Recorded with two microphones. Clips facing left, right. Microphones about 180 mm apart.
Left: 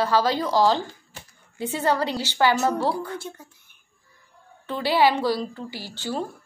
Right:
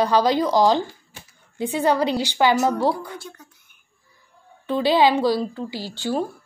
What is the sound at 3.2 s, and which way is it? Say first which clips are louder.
Whispering: left 3 dB; 25° left (ahead or behind).